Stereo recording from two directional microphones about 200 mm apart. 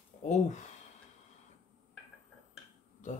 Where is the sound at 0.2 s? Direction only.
35° left (ahead or behind).